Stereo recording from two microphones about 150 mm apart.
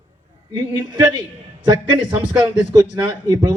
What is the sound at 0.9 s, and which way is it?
A man's voice, 30° right (ahead or behind).